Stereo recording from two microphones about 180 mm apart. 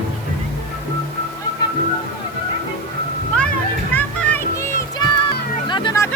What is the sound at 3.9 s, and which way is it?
Music, 10° left (ahead or behind).